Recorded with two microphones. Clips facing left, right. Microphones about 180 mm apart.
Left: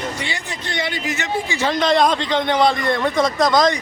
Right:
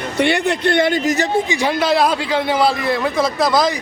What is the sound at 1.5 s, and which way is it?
A man's voice, 15° right (ahead or behind).